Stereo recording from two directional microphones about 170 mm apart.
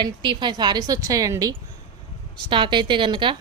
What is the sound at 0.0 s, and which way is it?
A woman's voice, 25° right (ahead or behind).